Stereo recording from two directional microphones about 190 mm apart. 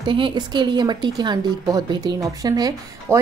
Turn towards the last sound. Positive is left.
turn(degrees=-20)  # may be behind; listen again after turning